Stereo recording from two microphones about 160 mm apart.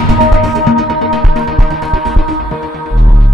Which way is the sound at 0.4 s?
Centre (ahead or behind).